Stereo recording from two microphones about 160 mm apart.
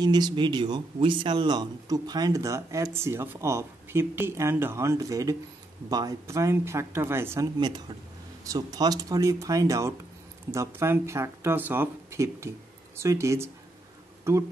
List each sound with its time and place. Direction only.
0.0 s speech: 25° right (ahead or behind)
7.5 s speech: 30° right (ahead or behind)